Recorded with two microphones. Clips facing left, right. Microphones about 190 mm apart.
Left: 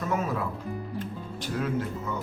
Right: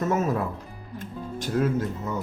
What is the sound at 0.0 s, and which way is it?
Music, 40° right (ahead or behind).